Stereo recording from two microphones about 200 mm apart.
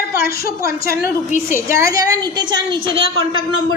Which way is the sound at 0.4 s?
45° left (ahead or behind).